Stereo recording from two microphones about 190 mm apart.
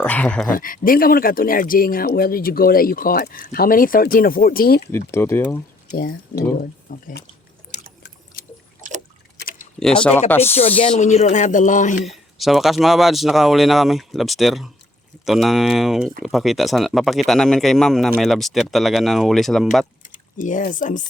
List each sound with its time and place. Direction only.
0.0 s speech: 5° left (ahead or behind)
0.5 s speech: 45° left (ahead or behind)
4.9 s speech: 15° left (ahead or behind)
5.9 s speech: 50° left (ahead or behind)
8.4 s a sound: 50° left (ahead or behind)
9.4 s typing: 45° left (ahead or behind)
9.8 s speech: 5° left (ahead or behind)
10.5 s speech: 30° left (ahead or behind)
12.0 s speech: centre (ahead or behind)
20.4 s speech: 45° left (ahead or behind)